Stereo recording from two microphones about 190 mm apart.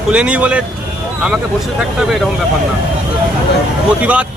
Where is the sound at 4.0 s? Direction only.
5° right (ahead or behind).